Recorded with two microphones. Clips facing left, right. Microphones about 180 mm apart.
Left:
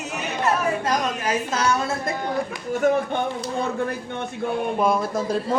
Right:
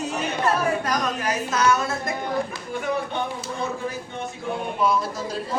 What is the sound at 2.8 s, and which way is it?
Speech, 45° left (ahead or behind).